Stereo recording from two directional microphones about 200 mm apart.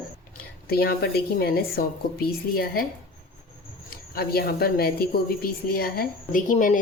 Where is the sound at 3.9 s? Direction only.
50° left (ahead or behind).